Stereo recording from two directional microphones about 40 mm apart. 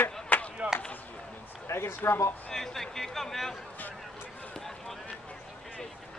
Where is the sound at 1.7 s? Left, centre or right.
Left.